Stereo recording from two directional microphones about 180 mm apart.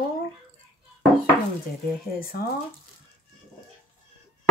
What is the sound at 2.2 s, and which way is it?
Speech, 55° left (ahead or behind).